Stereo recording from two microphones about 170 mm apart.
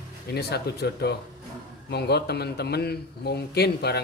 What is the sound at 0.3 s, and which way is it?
Speech, 75° left (ahead or behind).